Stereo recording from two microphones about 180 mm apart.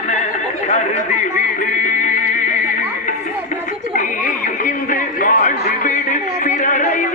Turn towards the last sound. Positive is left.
turn(degrees=45)  # may be behind; listen again after turning